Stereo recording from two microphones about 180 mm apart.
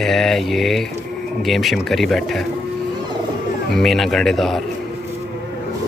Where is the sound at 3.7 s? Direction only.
Centre (ahead or behind).